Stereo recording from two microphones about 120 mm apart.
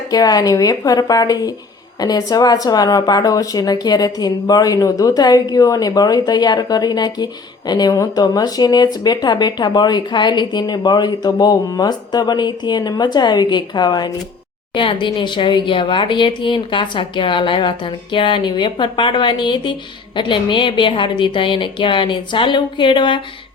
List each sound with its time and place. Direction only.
0.1 s speech: 30° left (ahead or behind)